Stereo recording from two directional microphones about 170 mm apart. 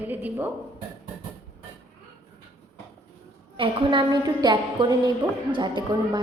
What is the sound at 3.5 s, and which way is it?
A woman's voice, 30° right (ahead or behind).